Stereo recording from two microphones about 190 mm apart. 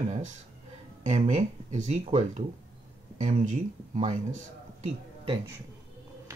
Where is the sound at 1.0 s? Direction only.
35° right (ahead or behind).